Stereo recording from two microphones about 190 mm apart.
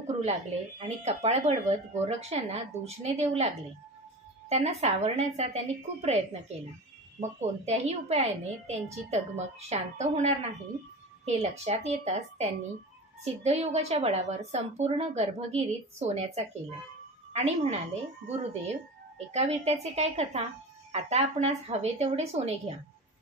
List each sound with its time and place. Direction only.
0.0 s speech: 40° right (ahead or behind)
4.5 s a woman's voice: 35° right (ahead or behind)